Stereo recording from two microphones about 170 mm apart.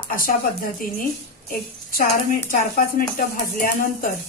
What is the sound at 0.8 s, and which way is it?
Speech, 55° left (ahead or behind).